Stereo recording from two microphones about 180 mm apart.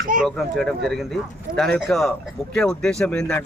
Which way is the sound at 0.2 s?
Centre (ahead or behind).